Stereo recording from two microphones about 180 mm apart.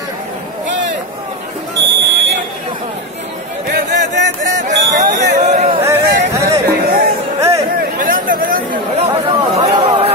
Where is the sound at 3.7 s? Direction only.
45° right (ahead or behind).